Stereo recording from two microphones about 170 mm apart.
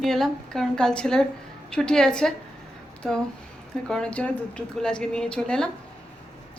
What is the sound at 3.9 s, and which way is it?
A woman's voice, 5° left (ahead or behind).